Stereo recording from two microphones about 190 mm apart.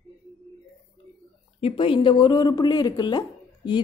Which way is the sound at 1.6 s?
30° left (ahead or behind).